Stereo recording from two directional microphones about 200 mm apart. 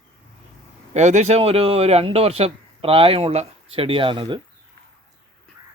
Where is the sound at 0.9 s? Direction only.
35° right (ahead or behind).